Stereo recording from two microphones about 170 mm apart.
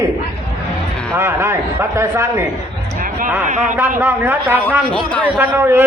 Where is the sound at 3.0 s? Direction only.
55° right (ahead or behind).